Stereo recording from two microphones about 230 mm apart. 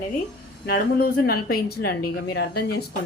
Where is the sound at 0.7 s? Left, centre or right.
Left.